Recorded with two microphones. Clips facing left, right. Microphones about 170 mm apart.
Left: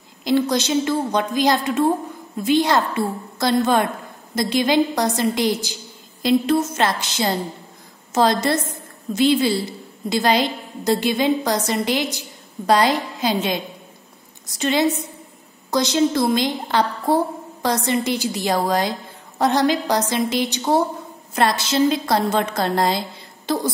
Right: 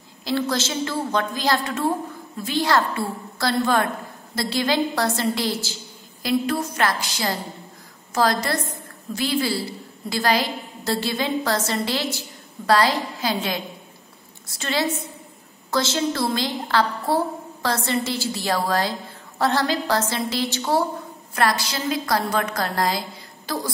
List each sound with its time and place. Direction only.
0.2 s a woman's voice: 20° left (ahead or behind)